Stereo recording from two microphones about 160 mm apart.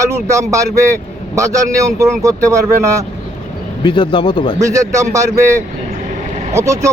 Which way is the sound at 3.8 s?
30° left (ahead or behind).